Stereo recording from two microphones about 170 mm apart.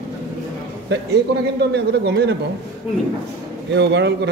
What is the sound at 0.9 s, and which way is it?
A man's voice, 80° right.